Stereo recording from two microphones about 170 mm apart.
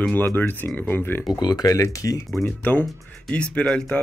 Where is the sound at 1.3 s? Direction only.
25° left (ahead or behind).